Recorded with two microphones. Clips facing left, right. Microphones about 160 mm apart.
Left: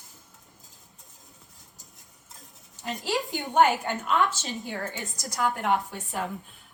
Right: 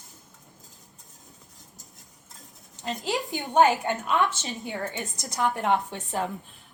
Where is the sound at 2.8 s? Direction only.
20° right (ahead or behind).